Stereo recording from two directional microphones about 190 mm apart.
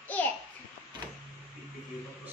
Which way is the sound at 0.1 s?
10° left (ahead or behind).